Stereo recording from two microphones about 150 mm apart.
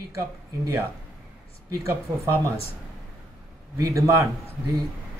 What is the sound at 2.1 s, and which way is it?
Speech, 20° right (ahead or behind).